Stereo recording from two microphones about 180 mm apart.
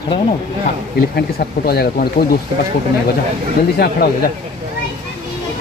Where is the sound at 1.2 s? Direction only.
60° left (ahead or behind).